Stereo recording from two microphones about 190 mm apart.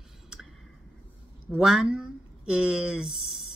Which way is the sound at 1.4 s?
5° right (ahead or behind).